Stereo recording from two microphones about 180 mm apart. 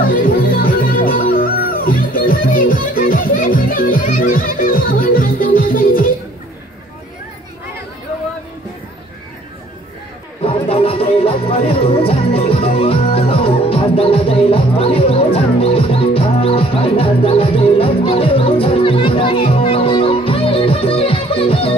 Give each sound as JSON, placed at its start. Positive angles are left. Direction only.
{"t": 0.0, "sound": "music", "side_deg": 50}
{"t": 10.4, "sound": "music", "side_deg": 30}